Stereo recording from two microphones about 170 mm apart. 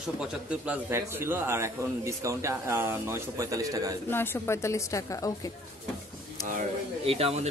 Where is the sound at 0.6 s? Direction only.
10° right (ahead or behind).